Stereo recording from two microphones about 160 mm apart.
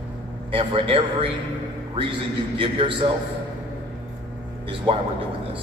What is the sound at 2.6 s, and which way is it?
Speech, 35° right (ahead or behind).